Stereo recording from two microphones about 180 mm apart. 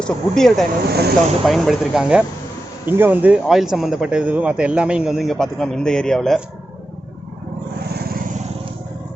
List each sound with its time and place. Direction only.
0.0 s speech: 5° left (ahead or behind)
0.9 s speech: 65° right (ahead or behind)
1.5 s speech: centre (ahead or behind)